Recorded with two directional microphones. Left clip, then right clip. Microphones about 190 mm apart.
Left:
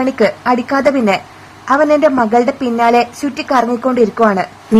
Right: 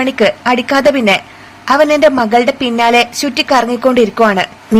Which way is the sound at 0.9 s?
15° right (ahead or behind).